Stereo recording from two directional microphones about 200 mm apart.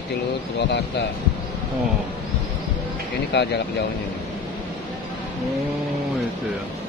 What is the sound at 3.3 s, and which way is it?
Speech, 60° left (ahead or behind).